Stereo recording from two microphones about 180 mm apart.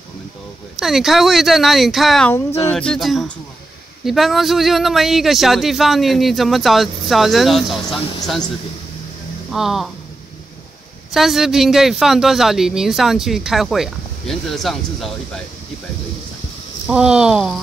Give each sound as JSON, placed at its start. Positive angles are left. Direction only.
{"t": 0.7, "sound": "speech", "side_deg": 0}
{"t": 9.5, "sound": "speech", "side_deg": 0}
{"t": 11.1, "sound": "speech", "side_deg": 0}
{"t": 16.8, "sound": "speech", "side_deg": -5}